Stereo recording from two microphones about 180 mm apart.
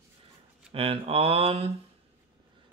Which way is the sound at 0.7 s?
30° right (ahead or behind).